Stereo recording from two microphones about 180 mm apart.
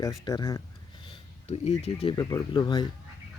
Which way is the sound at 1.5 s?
35° left (ahead or behind).